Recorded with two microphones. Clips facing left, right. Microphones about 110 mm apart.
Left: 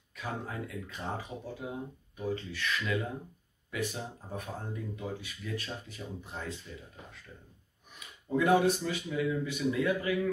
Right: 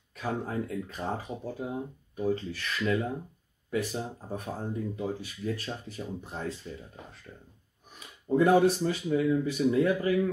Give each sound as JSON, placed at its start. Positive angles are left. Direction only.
{"t": 0.1, "sound": "speech", "side_deg": -40}
{"t": 7.3, "sound": "speech", "side_deg": -25}
{"t": 8.0, "sound": "speech", "side_deg": -35}